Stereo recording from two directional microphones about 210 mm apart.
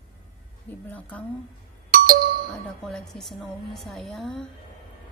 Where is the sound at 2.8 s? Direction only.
Centre (ahead or behind).